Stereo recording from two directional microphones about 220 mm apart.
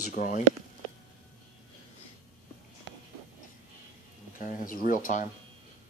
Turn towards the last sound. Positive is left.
turn(degrees=35)  # may be behind; listen again after turning